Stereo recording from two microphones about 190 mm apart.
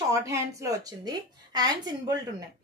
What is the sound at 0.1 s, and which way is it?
A woman's voice, 15° right (ahead or behind).